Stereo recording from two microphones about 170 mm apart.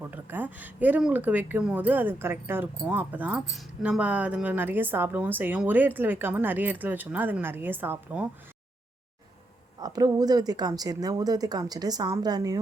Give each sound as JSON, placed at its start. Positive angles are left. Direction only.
{"t": 0.1, "sound": "speech", "side_deg": -10}
{"t": 9.8, "sound": "a woman's voice", "side_deg": -20}